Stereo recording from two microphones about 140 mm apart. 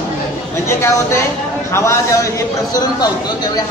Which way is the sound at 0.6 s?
20° left (ahead or behind).